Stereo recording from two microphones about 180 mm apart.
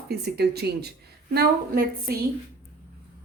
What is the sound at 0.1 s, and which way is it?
A woman's voice, 65° right (ahead or behind).